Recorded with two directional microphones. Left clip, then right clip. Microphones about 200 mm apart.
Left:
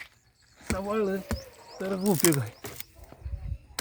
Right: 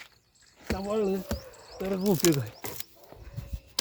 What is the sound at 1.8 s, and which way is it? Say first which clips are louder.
Speech: even; 30° left (ahead or behind).